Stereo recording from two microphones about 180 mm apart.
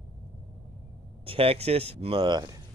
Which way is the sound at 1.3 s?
30° right (ahead or behind).